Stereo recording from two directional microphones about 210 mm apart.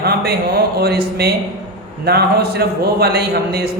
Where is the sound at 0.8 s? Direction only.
50° right (ahead or behind).